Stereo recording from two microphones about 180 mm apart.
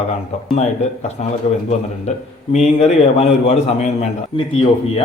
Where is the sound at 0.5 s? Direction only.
40° left (ahead or behind).